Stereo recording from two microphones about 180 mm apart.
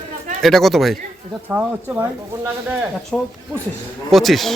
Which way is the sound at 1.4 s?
10° right (ahead or behind).